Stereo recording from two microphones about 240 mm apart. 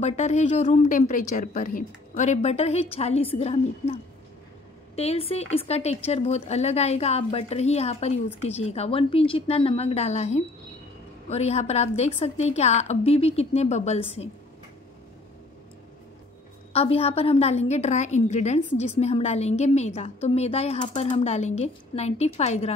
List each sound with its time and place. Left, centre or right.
0.0 s a woman's voice: left
16.7 s a woman's voice: left